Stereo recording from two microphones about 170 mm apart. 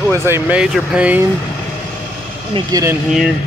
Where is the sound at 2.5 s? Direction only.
20° right (ahead or behind).